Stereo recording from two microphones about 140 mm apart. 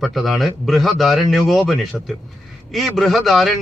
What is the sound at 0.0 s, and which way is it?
A man's voice, centre (ahead or behind).